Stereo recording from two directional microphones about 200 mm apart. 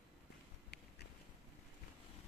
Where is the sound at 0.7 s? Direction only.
55° left (ahead or behind).